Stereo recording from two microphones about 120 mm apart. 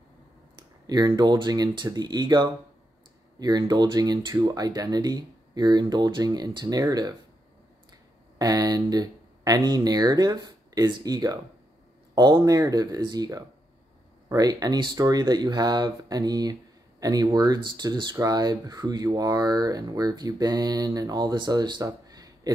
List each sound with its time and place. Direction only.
0.6 s speech: 35° right (ahead or behind)
8.4 s speech: 30° right (ahead or behind)